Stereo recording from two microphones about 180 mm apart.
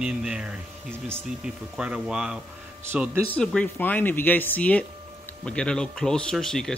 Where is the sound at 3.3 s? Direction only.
5° left (ahead or behind).